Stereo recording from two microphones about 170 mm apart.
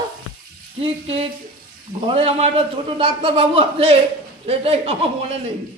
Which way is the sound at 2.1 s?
35° right (ahead or behind).